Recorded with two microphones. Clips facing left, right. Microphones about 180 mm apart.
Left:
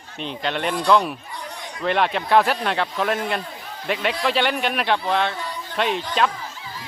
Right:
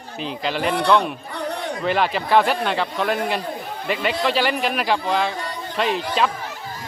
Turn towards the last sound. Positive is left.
turn(degrees=0)  # may be behind; listen again after turning